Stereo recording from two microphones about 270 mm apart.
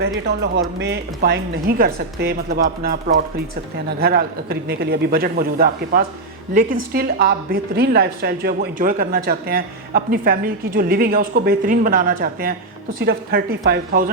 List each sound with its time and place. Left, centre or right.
0.0 s a woman's voice: right
4.0 s a woman's voice: right